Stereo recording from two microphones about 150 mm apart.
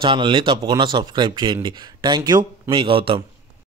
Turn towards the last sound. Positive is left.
turn(degrees=-35)  # may be behind; listen again after turning